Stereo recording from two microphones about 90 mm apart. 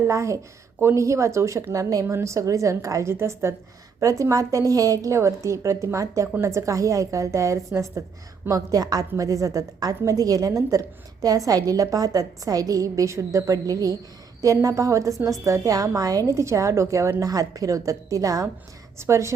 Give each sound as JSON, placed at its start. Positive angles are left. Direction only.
{"t": 0.0, "sound": "a woman's voice", "side_deg": -35}